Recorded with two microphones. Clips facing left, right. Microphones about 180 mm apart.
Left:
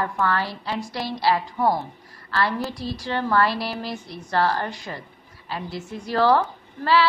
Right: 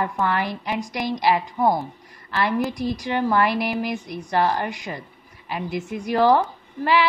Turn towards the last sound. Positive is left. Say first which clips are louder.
# even
turn(degrees=-15)  # may be behind; listen again after turning